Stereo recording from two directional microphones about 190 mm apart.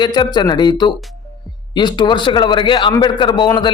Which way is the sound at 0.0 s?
25° left (ahead or behind).